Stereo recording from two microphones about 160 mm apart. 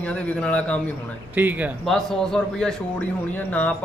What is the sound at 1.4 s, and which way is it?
Speech, 10° right (ahead or behind).